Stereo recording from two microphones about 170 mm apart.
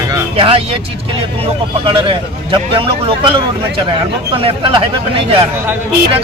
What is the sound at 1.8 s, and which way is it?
Speech, 30° right (ahead or behind).